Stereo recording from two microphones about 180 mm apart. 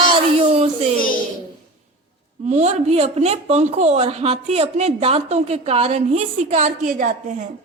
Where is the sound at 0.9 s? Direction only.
50° left (ahead or behind).